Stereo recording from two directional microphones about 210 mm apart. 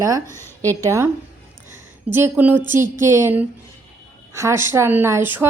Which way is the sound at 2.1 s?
10° right (ahead or behind).